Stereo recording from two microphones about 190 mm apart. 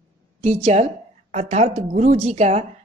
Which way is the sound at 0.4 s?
35° right (ahead or behind).